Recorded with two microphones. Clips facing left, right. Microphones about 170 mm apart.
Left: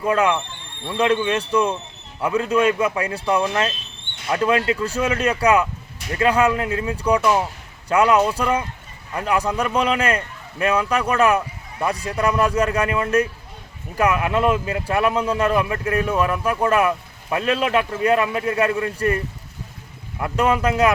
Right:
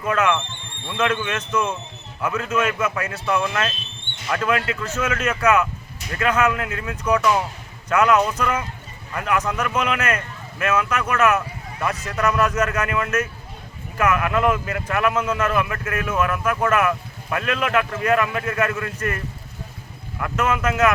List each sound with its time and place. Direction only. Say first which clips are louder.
0.0 s speech: left 2 dB; 30° left (ahead or behind)
7.2 s speech: even; 15° left (ahead or behind)
7.9 s speech: left 1 dB; 30° left (ahead or behind)